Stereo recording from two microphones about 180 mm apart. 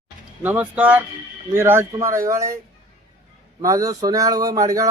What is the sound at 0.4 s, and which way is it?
Speech, 10° right (ahead or behind).